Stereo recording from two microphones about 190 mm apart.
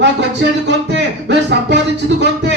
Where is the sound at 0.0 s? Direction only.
65° right (ahead or behind).